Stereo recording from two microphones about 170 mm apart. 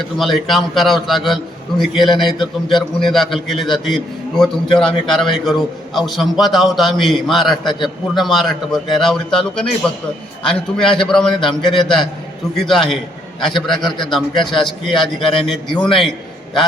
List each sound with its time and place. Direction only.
0.2 s a man's voice: centre (ahead or behind)
7.6 s a man's voice: 25° left (ahead or behind)
8.1 s a man's voice: centre (ahead or behind)
13.5 s a man's voice: 25° left (ahead or behind)
13.8 s a man's voice: centre (ahead or behind)